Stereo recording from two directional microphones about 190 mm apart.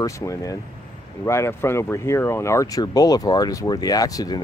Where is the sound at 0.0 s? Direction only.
15° left (ahead or behind).